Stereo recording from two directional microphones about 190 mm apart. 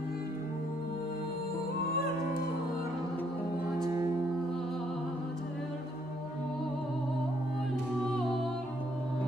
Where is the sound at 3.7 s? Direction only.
20° right (ahead or behind).